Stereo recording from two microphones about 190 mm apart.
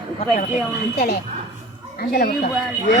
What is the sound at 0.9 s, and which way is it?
Speech, 55° left (ahead or behind).